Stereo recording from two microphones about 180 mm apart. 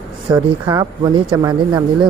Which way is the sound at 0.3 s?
20° right (ahead or behind).